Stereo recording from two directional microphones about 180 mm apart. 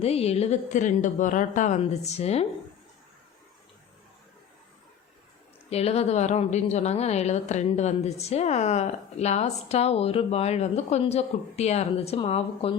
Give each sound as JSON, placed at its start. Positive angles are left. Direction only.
{"t": 0.0, "sound": "a woman's voice", "side_deg": 35}
{"t": 5.7, "sound": "a woman's voice", "side_deg": 35}